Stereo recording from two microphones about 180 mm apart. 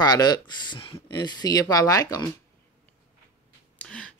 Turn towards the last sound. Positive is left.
turn(degrees=5)  # may be behind; listen again after turning